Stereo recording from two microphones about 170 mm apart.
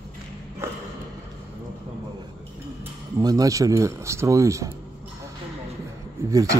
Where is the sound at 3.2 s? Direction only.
20° right (ahead or behind).